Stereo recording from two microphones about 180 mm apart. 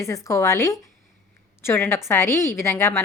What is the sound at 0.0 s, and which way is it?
A woman's voice, 15° left (ahead or behind).